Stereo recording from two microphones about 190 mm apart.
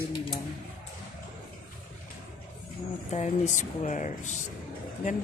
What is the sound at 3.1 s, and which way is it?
Speech, 40° left (ahead or behind).